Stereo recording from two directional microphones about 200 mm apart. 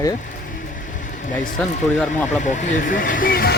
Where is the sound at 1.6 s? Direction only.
5° left (ahead or behind).